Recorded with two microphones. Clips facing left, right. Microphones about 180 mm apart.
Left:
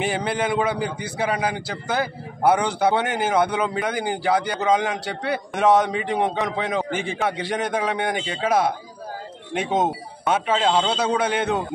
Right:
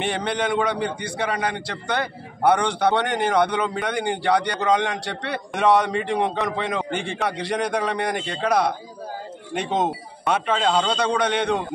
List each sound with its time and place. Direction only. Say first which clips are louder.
0.0 s a man's voice: left 1 dB; 5° left (ahead or behind)